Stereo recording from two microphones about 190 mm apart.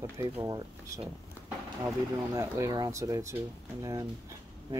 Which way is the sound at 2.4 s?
15° right (ahead or behind).